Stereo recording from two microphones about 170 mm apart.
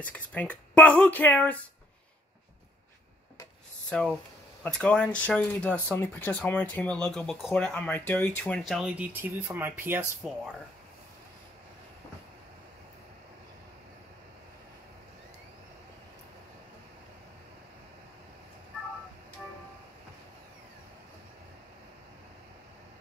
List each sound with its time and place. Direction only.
0.0 s speech: 10° left (ahead or behind)
3.9 s speech: 5° left (ahead or behind); by 10.0 s 10° right (ahead or behind)